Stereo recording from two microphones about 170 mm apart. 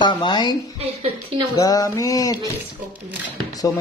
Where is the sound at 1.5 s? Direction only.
20° left (ahead or behind).